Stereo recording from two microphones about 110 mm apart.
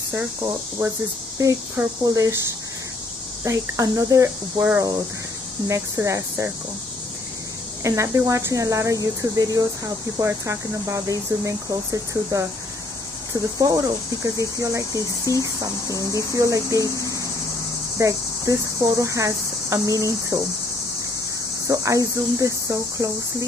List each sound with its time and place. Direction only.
0.1 s speech: 25° right (ahead or behind)
2.0 s speech: 30° right (ahead or behind)
3.4 s speech: 30° right (ahead or behind)
7.8 s speech: 25° right (ahead or behind)
13.3 s cricket: 30° right (ahead or behind)
16.3 s cricket: 30° right (ahead or behind)
17.9 s speech: 30° right (ahead or behind)
21.6 s speech: 30° right (ahead or behind)